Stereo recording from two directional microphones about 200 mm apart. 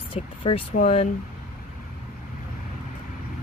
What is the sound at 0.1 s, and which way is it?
Speech, 25° left (ahead or behind).